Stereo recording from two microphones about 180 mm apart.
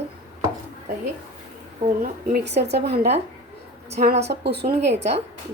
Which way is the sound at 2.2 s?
65° right (ahead or behind).